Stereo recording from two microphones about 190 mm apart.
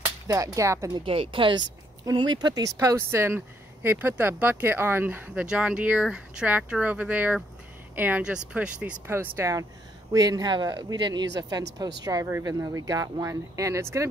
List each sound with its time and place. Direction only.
0.3 s speech: 15° right (ahead or behind)